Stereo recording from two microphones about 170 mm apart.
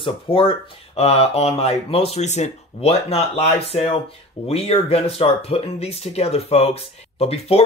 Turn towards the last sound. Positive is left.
turn(degrees=35)  # may be behind; listen again after turning